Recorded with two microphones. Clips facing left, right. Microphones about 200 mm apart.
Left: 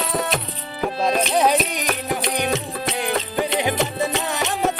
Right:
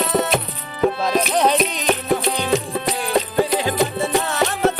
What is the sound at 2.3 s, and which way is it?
Music, 20° left (ahead or behind).